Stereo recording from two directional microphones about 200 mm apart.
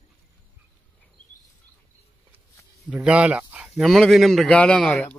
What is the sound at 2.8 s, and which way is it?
Speech, 5° right (ahead or behind).